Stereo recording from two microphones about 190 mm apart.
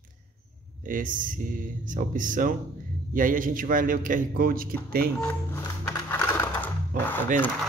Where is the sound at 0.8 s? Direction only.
45° right (ahead or behind).